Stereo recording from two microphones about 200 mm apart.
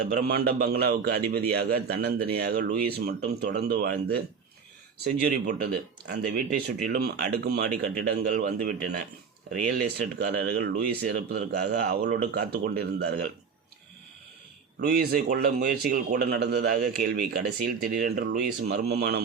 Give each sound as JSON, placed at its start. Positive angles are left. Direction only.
{"t": 0.1, "sound": "a man's voice", "side_deg": -50}
{"t": 6.8, "sound": "a man's voice", "side_deg": -45}
{"t": 14.8, "sound": "a man's voice", "side_deg": -50}